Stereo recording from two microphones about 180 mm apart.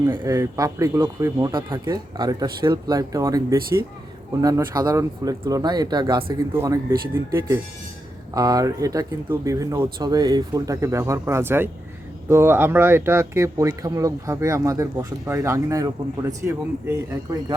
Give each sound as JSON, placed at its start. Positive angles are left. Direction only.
{"t": 0.0, "sound": "speech", "side_deg": -15}
{"t": 6.5, "sound": "speech", "side_deg": -15}